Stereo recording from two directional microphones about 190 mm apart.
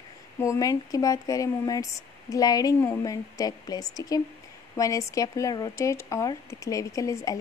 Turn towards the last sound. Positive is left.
turn(degrees=15)  # may be behind; listen again after turning